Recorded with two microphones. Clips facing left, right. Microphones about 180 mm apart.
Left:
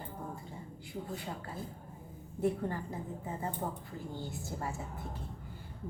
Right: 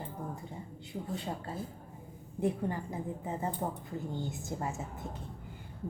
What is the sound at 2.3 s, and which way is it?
A woman's voice, 15° right (ahead or behind).